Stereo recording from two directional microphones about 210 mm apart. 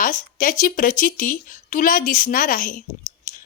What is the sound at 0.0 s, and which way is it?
A woman's voice, 40° left (ahead or behind).